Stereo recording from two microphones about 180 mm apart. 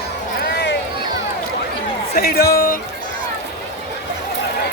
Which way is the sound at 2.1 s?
60° left (ahead or behind).